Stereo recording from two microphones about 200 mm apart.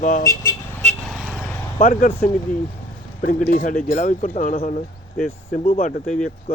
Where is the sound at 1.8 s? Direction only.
45° left (ahead or behind).